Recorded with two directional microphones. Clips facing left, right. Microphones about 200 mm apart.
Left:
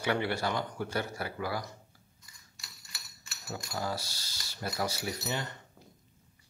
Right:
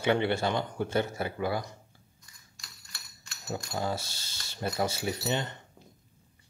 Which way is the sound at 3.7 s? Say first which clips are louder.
Right 2 dB; 25° right (ahead or behind).